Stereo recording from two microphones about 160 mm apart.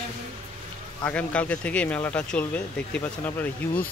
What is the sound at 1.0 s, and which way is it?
Speech, 10° left (ahead or behind).